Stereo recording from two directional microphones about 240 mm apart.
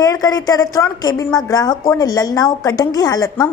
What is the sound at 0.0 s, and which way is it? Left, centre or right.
A woman's voice, centre.